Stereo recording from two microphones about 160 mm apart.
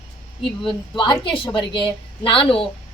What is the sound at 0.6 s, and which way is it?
A woman's voice, 30° left (ahead or behind).